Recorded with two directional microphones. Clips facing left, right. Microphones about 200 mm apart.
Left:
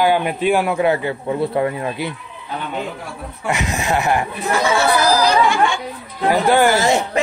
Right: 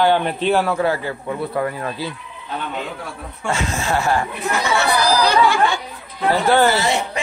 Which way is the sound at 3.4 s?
15° left (ahead or behind).